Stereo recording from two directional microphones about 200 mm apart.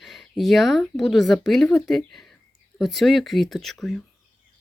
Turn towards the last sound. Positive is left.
turn(degrees=0)  # may be behind; listen again after turning